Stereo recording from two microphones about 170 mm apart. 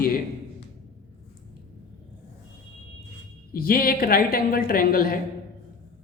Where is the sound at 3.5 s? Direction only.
60° left (ahead or behind).